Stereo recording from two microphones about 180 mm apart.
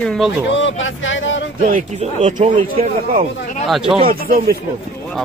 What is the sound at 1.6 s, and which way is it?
Speech, 45° right (ahead or behind).